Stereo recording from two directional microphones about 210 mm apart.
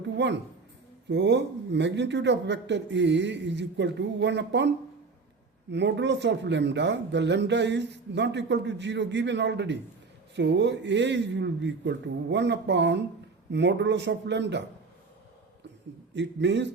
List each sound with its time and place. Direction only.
0.2 s speech: 55° right (ahead or behind)
5.7 s speech: 55° right (ahead or behind)
16.1 s speech: 55° right (ahead or behind)